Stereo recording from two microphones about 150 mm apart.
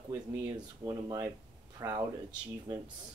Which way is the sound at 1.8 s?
25° right (ahead or behind).